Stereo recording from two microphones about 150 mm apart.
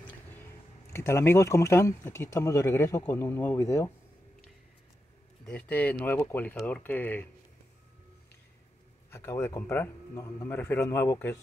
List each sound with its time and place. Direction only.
0.9 s speech: 15° left (ahead or behind)
5.5 s a man's voice: 10° left (ahead or behind)
9.1 s a man's voice: 15° left (ahead or behind)